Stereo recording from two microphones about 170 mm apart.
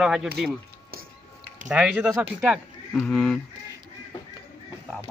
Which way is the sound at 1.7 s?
5° right (ahead or behind).